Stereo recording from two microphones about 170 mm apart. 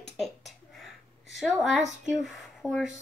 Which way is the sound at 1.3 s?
Centre (ahead or behind).